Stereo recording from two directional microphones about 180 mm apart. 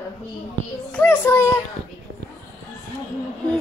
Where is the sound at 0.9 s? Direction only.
10° left (ahead or behind).